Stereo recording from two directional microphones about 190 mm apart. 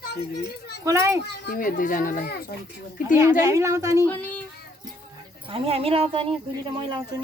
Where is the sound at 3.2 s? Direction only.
15° right (ahead or behind).